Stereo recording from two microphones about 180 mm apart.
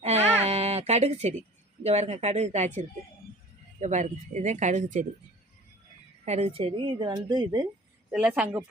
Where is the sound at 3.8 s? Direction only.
40° right (ahead or behind).